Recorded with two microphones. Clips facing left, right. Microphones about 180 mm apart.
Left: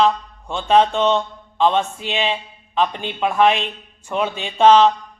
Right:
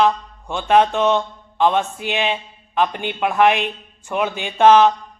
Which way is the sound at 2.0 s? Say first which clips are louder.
Right 1 dB; 10° right (ahead or behind).